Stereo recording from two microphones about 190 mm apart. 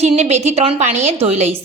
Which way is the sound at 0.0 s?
35° right (ahead or behind).